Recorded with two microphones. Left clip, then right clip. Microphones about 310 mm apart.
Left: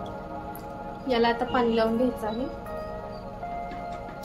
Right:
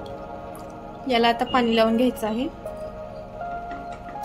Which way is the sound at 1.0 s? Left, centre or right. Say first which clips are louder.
Right 4 dB; right.